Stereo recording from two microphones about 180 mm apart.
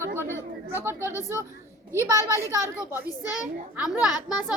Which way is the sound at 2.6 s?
15° left (ahead or behind).